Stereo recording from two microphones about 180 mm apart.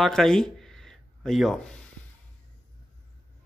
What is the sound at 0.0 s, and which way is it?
Speech, centre (ahead or behind).